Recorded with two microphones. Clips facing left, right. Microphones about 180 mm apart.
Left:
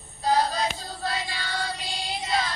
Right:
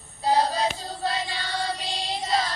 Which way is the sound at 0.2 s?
30° right (ahead or behind).